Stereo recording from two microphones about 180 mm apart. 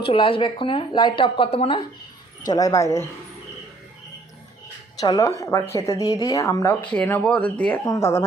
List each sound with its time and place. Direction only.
0.0 s speech: 30° left (ahead or behind)
2.5 s speech: 20° left (ahead or behind)
4.9 s speech: 20° left (ahead or behind)